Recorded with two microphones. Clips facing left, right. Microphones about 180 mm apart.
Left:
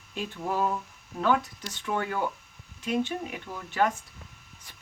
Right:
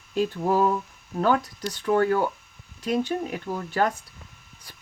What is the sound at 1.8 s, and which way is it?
Speech, 40° right (ahead or behind).